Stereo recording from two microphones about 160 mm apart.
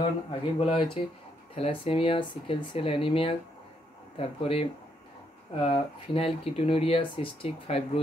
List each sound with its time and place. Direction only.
0.3 s speech: 35° left (ahead or behind)